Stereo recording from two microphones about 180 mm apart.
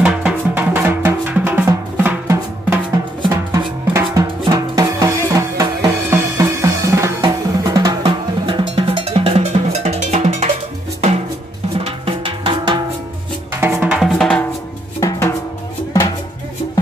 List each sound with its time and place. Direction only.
0.0 s drum: 5° right (ahead or behind); by 10.5 s 40° right (ahead or behind)
11.8 s music: 30° right (ahead or behind)
13.5 s drum: 10° right (ahead or behind)
15.0 s drum: 15° left (ahead or behind)